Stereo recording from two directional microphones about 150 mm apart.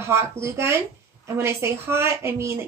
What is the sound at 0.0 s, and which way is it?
A woman's voice, 15° right (ahead or behind).